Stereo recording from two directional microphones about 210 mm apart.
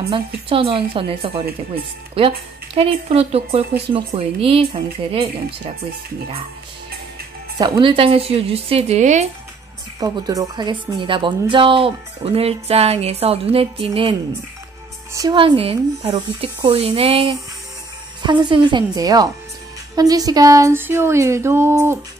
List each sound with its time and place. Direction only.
0.1 s speech: 25° right (ahead or behind)
7.5 s speech: 20° right (ahead or behind)
9.9 s speech: 20° right (ahead or behind)
15.1 s speech: 20° right (ahead or behind)